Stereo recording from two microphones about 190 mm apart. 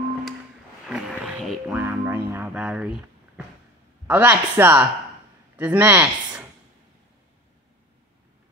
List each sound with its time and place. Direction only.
0.8 s a sound: centre (ahead or behind)
1.8 s speech: 10° right (ahead or behind)
4.1 s speech: 10° right (ahead or behind)